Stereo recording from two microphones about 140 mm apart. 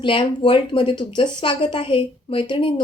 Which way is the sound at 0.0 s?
35° left (ahead or behind).